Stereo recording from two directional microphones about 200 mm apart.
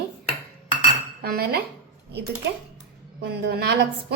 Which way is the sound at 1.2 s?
50° right (ahead or behind).